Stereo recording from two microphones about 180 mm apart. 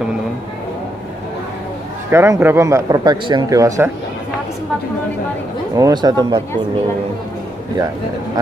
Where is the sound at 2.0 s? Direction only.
15° right (ahead or behind).